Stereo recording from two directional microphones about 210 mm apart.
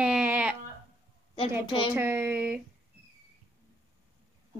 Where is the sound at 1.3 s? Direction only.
25° left (ahead or behind).